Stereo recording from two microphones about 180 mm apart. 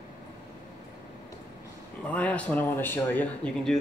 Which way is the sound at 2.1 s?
10° left (ahead or behind).